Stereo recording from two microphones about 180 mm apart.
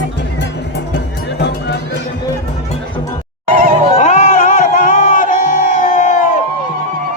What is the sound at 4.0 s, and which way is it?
Music, 40° left (ahead or behind).